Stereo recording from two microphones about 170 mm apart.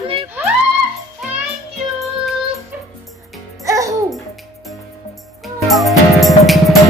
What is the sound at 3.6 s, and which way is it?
Babbling, 20° right (ahead or behind).